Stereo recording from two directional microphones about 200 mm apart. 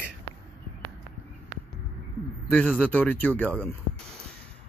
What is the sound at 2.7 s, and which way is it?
Speech, 5° left (ahead or behind).